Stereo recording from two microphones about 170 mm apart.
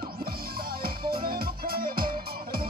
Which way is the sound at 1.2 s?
60° right (ahead or behind).